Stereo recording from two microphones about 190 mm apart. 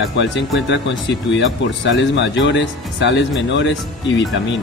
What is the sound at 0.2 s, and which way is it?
Speech, 70° left (ahead or behind).